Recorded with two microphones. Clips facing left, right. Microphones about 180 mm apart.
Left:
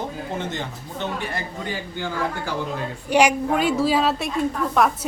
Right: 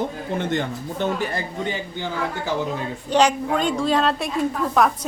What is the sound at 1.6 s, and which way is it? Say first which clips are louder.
Speech: right 2 dB; 20° right (ahead or behind).